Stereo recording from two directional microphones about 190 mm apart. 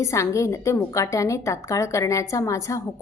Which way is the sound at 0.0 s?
15° left (ahead or behind).